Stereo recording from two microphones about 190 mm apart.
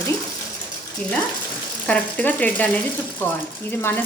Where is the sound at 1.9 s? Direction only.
10° left (ahead or behind).